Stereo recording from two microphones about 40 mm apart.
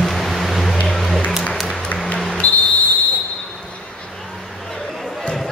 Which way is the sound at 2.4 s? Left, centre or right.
Left.